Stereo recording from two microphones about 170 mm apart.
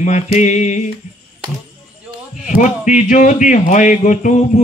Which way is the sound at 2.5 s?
45° left (ahead or behind).